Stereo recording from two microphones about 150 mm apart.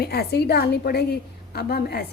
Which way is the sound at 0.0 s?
90° left.